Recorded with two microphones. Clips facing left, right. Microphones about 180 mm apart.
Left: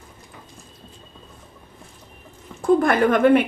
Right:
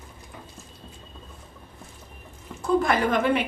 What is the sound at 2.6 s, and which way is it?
Speech, 55° left (ahead or behind).